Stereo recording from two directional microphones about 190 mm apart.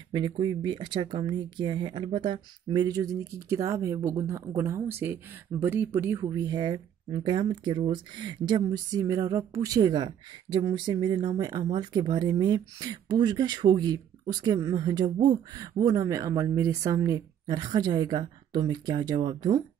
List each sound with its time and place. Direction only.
0.1 s speech: 25° right (ahead or behind)